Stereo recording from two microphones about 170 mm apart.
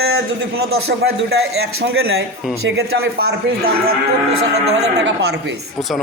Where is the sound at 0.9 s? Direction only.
80° right.